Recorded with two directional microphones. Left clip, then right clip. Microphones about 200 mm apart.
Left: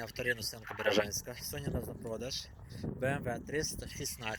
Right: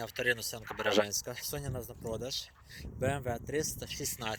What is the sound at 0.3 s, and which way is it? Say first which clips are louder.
Speech: right 3 dB; 20° right (ahead or behind).